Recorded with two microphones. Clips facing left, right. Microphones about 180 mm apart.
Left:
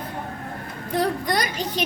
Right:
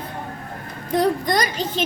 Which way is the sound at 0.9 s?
10° left (ahead or behind).